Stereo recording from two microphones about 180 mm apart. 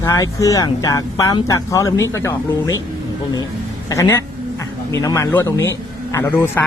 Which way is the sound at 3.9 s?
15° left (ahead or behind).